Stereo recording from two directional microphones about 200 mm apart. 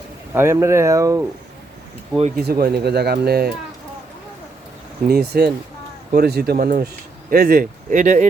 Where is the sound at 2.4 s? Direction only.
50° right (ahead or behind).